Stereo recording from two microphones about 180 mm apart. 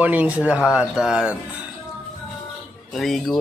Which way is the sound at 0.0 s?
10° right (ahead or behind).